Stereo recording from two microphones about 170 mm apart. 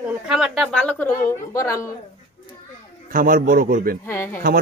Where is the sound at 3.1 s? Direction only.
55° right (ahead or behind).